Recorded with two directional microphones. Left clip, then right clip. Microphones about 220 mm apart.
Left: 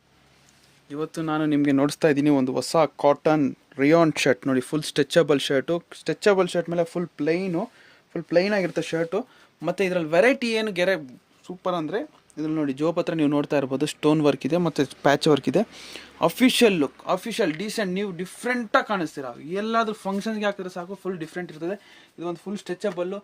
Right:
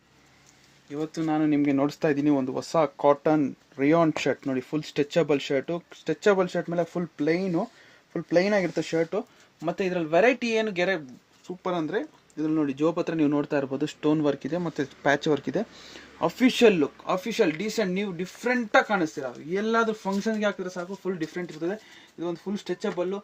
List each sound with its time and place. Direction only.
0.9 s a man's voice: 25° left (ahead or behind)
9.6 s speech: 50° left (ahead or behind)
11.4 s a man's voice: 25° left (ahead or behind)